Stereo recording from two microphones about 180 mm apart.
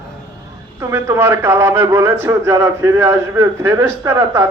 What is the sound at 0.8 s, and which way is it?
Speech, 15° right (ahead or behind).